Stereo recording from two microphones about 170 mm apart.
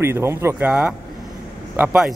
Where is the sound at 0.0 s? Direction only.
15° right (ahead or behind).